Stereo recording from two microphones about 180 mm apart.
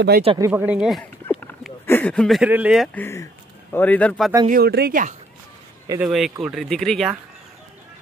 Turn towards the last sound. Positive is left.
turn(degrees=5)  # may be behind; listen again after turning